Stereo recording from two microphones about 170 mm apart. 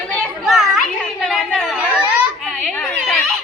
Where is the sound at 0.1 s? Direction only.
5° left (ahead or behind).